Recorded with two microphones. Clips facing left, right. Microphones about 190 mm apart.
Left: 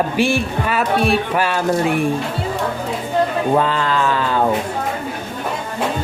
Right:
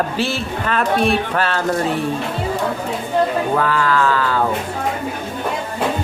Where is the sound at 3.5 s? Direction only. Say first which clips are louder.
Left 1 dB; 20° left (ahead or behind).